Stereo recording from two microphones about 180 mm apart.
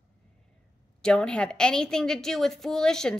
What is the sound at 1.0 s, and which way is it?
A woman's voice, 5° left (ahead or behind).